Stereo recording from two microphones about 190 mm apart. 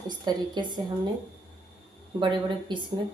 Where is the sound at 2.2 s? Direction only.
25° right (ahead or behind).